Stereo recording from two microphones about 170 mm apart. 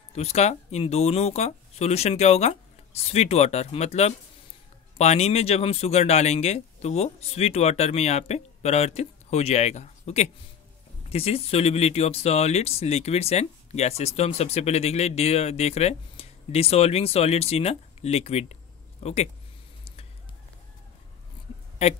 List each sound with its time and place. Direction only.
0.1 s speech: 40° left (ahead or behind)
21.8 s speech: 40° left (ahead or behind)